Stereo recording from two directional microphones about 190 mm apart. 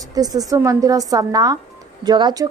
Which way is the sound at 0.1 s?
20° right (ahead or behind).